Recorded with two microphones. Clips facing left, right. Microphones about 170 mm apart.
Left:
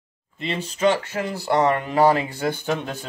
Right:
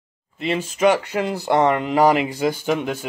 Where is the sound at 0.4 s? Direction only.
5° right (ahead or behind).